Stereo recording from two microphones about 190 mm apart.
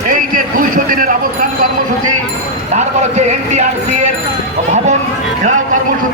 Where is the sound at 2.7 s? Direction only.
35° right (ahead or behind).